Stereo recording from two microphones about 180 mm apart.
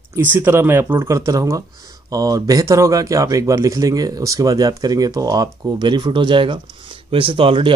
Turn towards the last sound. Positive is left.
turn(degrees=-30)  # may be behind; listen again after turning